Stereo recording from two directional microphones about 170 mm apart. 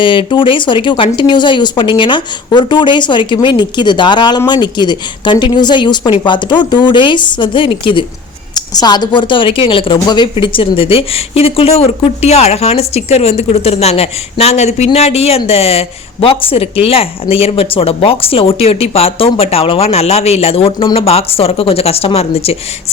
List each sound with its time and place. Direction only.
0.0 s speech: 30° left (ahead or behind)